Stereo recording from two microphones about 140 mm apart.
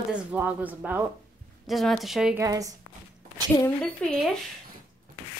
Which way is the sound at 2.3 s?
25° right (ahead or behind).